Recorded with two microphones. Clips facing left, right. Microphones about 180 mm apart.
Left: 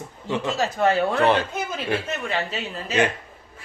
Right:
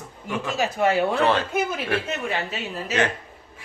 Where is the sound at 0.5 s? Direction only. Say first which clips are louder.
Right 1 dB; 10° right (ahead or behind).